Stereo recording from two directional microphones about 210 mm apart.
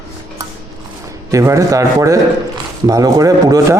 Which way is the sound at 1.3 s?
15° right (ahead or behind).